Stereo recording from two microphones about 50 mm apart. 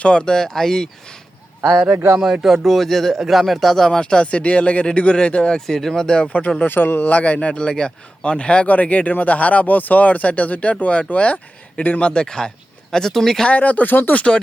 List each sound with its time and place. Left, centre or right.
0.0 s speech: centre
2.1 s speech: centre
3.8 s speech: centre
6.2 s a man's voice: left
6.7 s a man's voice: left; by 13.5 s centre
13.5 s speech: left
14.2 s a man's voice: centre